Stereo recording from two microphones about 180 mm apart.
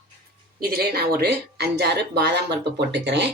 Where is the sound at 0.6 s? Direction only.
60° right (ahead or behind).